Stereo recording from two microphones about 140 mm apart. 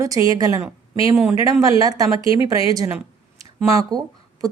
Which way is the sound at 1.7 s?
25° right (ahead or behind).